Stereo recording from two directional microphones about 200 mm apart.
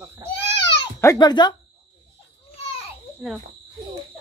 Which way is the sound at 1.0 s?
20° left (ahead or behind).